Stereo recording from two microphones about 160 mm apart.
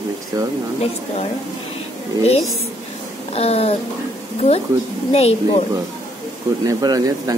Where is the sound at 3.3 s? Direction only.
40° left (ahead or behind).